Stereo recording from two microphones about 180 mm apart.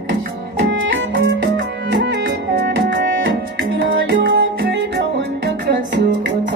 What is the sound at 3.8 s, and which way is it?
Music, 90° right.